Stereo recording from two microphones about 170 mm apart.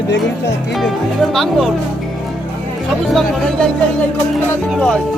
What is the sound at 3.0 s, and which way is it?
Speech, centre (ahead or behind).